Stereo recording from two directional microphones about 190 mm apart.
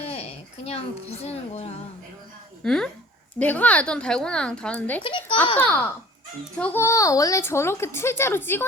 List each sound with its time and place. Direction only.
0.1 s a sound: 35° left (ahead or behind)
1.1 s a woman's voice: 35° left (ahead or behind)
2.6 s a woman's voice: 5° left (ahead or behind)
5.0 s a child's voice: 25° left (ahead or behind)
5.5 s a woman's voice: 5° left (ahead or behind)